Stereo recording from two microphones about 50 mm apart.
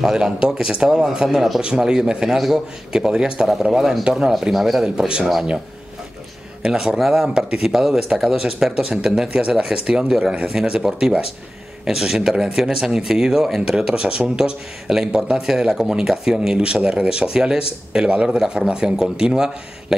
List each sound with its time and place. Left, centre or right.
0.0 s speech: centre
3.7 s speech: centre
4.8 s speech: centre
7.0 s speech: centre
18.1 s speech: right
18.4 s speech: centre